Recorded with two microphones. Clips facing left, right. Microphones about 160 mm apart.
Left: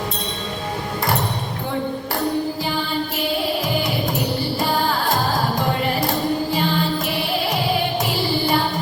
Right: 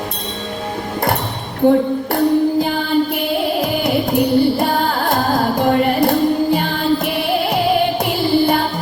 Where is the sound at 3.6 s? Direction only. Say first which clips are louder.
Right 5 dB; 60° right (ahead or behind).